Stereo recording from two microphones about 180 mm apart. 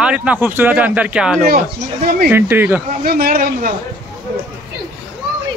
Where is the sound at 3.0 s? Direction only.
55° right (ahead or behind).